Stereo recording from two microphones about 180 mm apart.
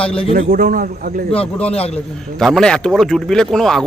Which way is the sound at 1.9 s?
Centre (ahead or behind).